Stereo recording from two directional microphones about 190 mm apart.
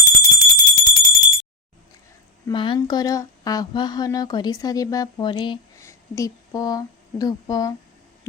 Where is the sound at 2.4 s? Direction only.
25° left (ahead or behind).